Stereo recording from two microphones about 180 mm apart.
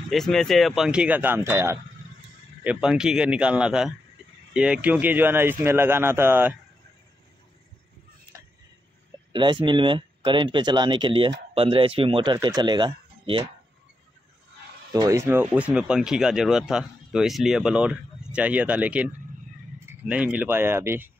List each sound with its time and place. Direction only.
0.1 s speech: centre (ahead or behind)
9.3 s speech: 25° right (ahead or behind)
14.9 s speech: 15° right (ahead or behind)